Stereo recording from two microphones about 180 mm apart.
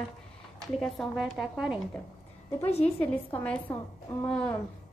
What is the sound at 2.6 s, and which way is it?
Speech, 35° left (ahead or behind).